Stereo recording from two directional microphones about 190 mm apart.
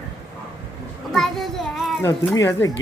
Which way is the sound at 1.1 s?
Centre (ahead or behind).